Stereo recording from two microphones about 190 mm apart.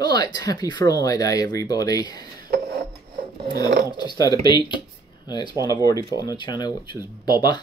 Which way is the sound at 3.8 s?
20° left (ahead or behind).